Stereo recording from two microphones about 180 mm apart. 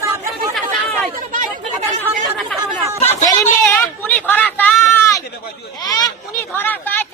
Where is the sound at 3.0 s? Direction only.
40° left (ahead or behind).